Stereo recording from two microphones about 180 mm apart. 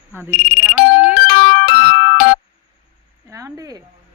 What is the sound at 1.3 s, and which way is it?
Music, 50° left (ahead or behind).